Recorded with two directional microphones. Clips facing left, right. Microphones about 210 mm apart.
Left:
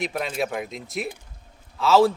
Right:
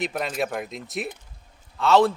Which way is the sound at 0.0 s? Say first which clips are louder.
Even; centre (ahead or behind).